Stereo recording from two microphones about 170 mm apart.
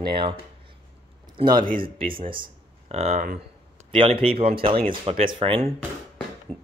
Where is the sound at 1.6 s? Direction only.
55° right (ahead or behind).